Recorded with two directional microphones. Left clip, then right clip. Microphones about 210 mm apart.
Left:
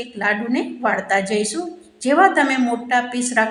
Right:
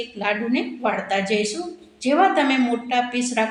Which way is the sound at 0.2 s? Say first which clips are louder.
Left 3 dB; 20° left (ahead or behind).